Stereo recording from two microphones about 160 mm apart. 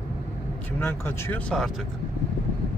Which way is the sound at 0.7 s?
15° left (ahead or behind).